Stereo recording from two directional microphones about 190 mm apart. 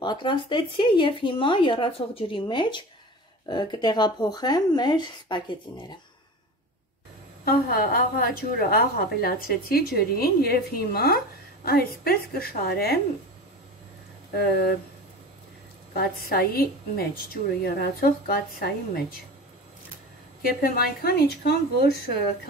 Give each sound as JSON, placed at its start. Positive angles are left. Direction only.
{"t": 0.0, "sound": "speech", "side_deg": 25}
{"t": 7.4, "sound": "a woman's voice", "side_deg": 55}
{"t": 14.3, "sound": "a woman's voice", "side_deg": 55}
{"t": 15.9, "sound": "a woman's voice", "side_deg": 55}
{"t": 20.4, "sound": "a woman's voice", "side_deg": 50}